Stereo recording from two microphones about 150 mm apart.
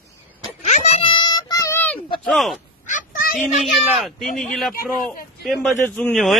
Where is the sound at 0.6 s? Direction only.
50° left (ahead or behind).